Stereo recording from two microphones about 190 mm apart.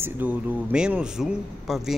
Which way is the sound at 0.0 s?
10° right (ahead or behind).